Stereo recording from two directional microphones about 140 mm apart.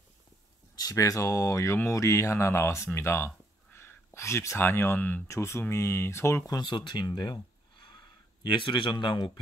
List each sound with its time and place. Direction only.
0.7 s speech: 25° left (ahead or behind)